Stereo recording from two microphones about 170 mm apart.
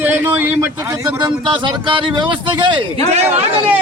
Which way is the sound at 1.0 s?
25° right (ahead or behind).